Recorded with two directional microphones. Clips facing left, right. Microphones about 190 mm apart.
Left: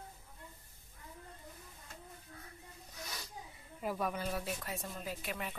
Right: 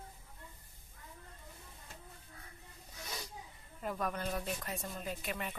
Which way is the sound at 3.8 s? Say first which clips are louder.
Left 1 dB; 5° left (ahead or behind).